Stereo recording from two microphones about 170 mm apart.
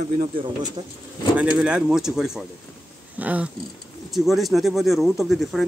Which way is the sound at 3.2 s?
10° right (ahead or behind).